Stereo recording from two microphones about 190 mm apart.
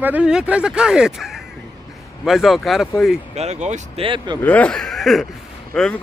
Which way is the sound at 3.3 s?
35° right (ahead or behind).